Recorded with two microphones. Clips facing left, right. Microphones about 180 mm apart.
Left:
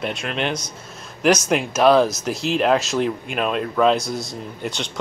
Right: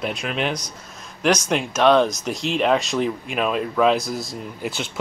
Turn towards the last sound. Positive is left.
turn(degrees=-5)  # may be behind; listen again after turning